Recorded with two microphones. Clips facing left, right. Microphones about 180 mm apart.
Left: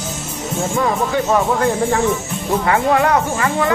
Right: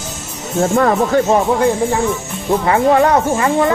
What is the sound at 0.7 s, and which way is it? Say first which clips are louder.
Speech: right 5 dB; 60° right (ahead or behind).